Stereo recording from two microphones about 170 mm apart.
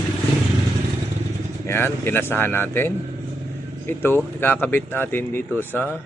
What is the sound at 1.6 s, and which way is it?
A man's voice, 15° left (ahead or behind).